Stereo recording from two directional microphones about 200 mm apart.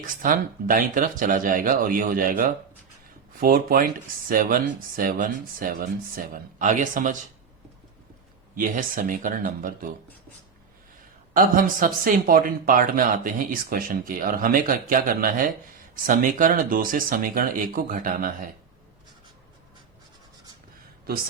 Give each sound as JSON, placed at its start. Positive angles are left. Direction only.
{"t": 0.0, "sound": "speech", "side_deg": -45}
{"t": 8.5, "sound": "speech", "side_deg": -45}
{"t": 11.3, "sound": "speech", "side_deg": -45}